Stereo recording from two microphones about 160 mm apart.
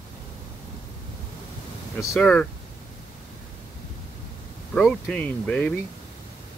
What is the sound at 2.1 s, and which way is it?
Speech, 5° left (ahead or behind).